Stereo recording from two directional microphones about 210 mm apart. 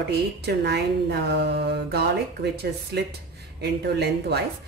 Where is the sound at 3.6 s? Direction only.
50° right (ahead or behind).